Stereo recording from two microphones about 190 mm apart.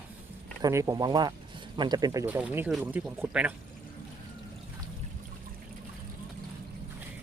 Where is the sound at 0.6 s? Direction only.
20° right (ahead or behind).